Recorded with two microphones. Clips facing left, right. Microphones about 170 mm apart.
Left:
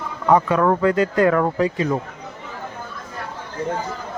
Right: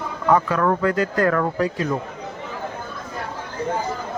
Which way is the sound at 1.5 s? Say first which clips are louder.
Left 2 dB; centre (ahead or behind).